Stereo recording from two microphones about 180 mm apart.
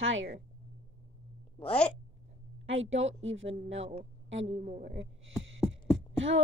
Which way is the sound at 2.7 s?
90° right.